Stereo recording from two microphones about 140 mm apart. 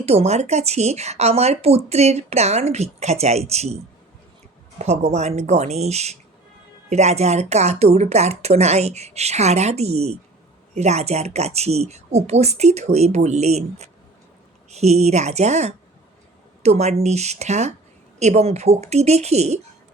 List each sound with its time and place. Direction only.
0.0 s speech: 45° right (ahead or behind)
4.8 s speech: 50° right (ahead or behind)